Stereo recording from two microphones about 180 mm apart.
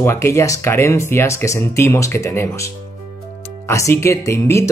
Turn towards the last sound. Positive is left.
turn(degrees=15)  # may be behind; listen again after turning